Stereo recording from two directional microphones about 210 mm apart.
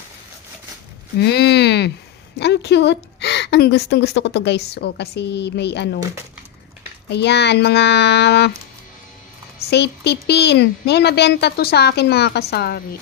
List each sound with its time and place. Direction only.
1.2 s a woman's voice: 55° left (ahead or behind)
7.1 s a woman's voice: 55° left (ahead or behind)
9.6 s a woman's voice: 55° left (ahead or behind)